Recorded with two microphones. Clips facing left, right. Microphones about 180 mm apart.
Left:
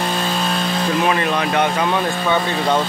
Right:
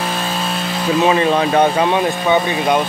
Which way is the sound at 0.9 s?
25° right (ahead or behind).